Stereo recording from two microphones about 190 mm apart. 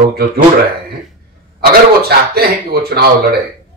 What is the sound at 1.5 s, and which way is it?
Speech, 55° right (ahead or behind).